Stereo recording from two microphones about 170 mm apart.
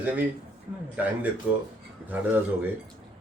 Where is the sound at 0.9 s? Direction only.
10° right (ahead or behind).